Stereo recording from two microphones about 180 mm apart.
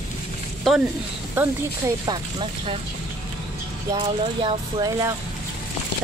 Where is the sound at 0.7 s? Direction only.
Centre (ahead or behind).